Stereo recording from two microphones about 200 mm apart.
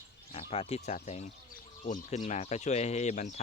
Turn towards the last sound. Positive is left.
turn(degrees=35)  # may be behind; listen again after turning